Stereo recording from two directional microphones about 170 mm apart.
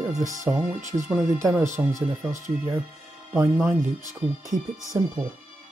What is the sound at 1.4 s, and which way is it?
Speech, 15° right (ahead or behind).